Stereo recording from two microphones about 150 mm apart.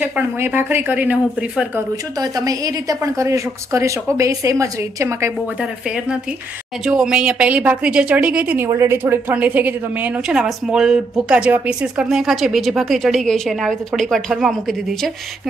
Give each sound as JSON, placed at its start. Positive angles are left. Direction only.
{"t": 0.0, "sound": "speech", "side_deg": -10}
{"t": 2.1, "sound": "a woman's voice", "side_deg": -25}
{"t": 5.6, "sound": "a woman's voice", "side_deg": -5}